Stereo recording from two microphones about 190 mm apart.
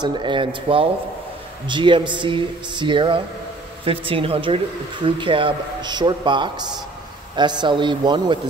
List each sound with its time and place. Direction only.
0.0 s speech: 25° right (ahead or behind)